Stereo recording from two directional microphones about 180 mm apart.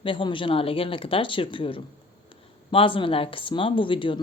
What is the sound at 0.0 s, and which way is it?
Speech, 30° left (ahead or behind).